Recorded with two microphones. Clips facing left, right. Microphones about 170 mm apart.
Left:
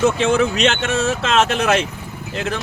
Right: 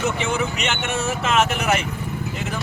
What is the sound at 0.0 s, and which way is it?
Speech, 90° left.